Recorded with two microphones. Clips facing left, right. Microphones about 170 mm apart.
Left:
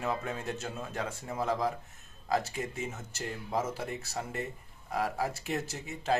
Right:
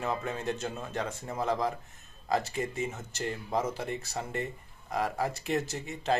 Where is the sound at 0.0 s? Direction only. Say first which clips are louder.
Right 2 dB; centre (ahead or behind).